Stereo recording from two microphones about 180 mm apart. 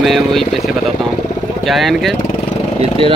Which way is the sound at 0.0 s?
Centre (ahead or behind).